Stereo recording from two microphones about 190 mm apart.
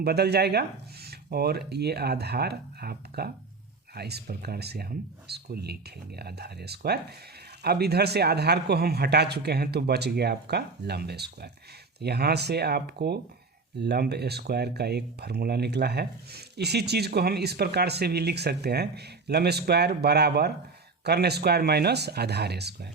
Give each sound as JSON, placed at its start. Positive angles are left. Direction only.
{"t": 0.0, "sound": "speech", "side_deg": -60}